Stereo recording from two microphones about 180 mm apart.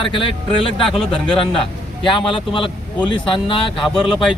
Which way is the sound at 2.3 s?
30° left (ahead or behind).